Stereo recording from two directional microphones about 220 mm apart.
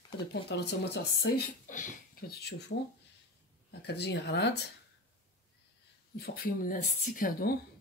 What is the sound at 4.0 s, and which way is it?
Speech, 50° left (ahead or behind).